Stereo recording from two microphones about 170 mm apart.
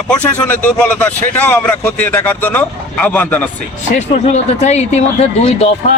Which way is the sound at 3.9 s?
40° left (ahead or behind).